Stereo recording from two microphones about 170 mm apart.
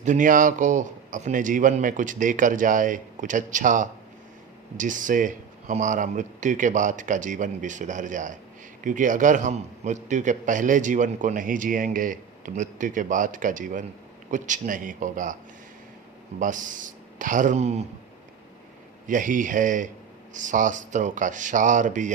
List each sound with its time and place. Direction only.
0.0 s a man's voice: 50° right (ahead or behind)
16.4 s a man's voice: 50° right (ahead or behind)
19.0 s a man's voice: 50° right (ahead or behind)